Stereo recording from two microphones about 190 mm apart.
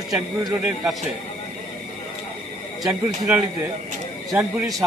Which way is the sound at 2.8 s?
15° right (ahead or behind).